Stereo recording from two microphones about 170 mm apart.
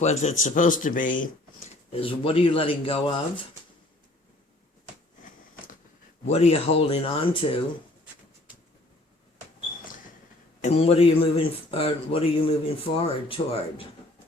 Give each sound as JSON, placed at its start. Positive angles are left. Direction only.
{"t": 0.0, "sound": "speech", "side_deg": 40}
{"t": 1.9, "sound": "speech", "side_deg": 35}
{"t": 6.2, "sound": "speech", "side_deg": 40}
{"t": 10.6, "sound": "speech", "side_deg": 35}